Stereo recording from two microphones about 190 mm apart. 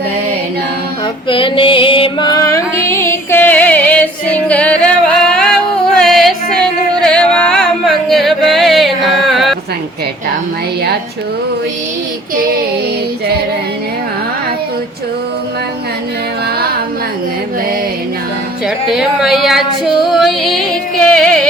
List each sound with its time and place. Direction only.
1.3 s music: 25° left (ahead or behind); by 9.6 s centre (ahead or behind)
16.6 s music: 55° right (ahead or behind)
18.9 s female singing: centre (ahead or behind)